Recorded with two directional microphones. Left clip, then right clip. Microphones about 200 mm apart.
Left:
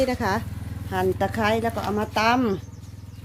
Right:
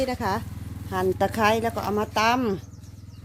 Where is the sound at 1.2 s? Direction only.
25° right (ahead or behind).